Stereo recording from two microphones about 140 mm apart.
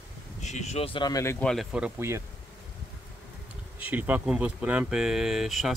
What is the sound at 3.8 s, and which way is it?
Speech, 10° right (ahead or behind).